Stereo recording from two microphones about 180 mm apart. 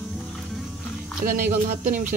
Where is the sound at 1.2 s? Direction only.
55° right (ahead or behind).